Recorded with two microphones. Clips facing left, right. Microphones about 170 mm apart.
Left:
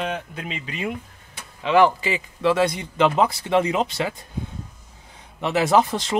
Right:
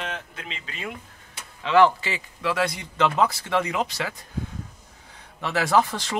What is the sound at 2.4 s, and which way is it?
Speech, 25° left (ahead or behind).